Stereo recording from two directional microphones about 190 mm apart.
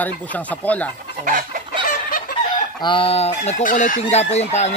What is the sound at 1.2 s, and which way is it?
Chicken, 45° right (ahead or behind).